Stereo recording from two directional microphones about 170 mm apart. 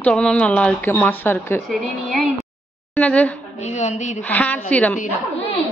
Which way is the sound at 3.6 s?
45° left (ahead or behind).